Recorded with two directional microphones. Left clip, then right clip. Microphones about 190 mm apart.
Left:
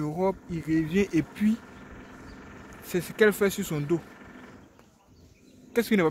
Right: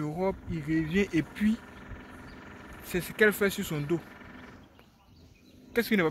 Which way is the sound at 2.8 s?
15° left (ahead or behind).